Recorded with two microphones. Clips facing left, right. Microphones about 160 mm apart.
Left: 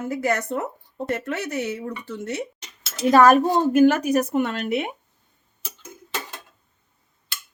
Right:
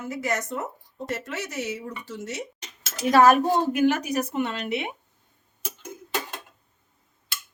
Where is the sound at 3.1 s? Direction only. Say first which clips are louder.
Left 2 dB; 45° left (ahead or behind).